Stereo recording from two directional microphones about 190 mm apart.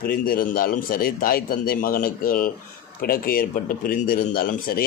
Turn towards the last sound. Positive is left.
turn(degrees=50)  # may be behind; listen again after turning